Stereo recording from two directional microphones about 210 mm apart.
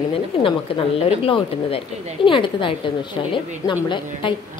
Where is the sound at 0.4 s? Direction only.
25° left (ahead or behind).